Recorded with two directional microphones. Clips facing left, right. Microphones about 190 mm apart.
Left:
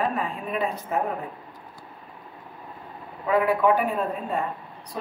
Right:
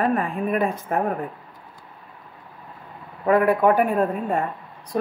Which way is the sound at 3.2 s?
50° right (ahead or behind).